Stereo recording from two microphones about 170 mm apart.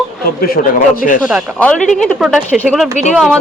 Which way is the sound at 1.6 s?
5° left (ahead or behind).